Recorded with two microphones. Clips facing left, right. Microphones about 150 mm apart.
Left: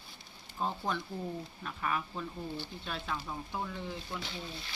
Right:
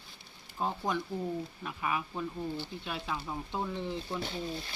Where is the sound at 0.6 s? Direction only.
15° right (ahead or behind).